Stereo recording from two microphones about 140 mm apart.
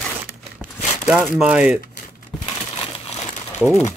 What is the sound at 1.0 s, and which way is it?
Speech, centre (ahead or behind).